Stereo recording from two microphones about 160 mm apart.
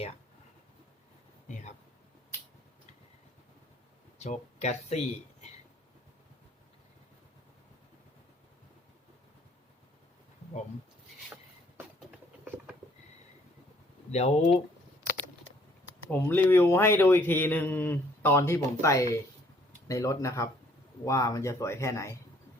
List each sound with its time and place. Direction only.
4.2 s speech: 45° left (ahead or behind)
14.1 s speech: 40° left (ahead or behind)
16.0 s a man's voice: 10° left (ahead or behind)